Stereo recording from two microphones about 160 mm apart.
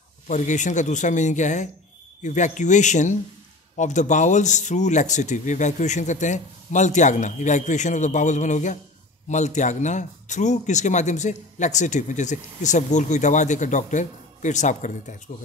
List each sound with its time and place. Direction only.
0.3 s speech: 50° left (ahead or behind)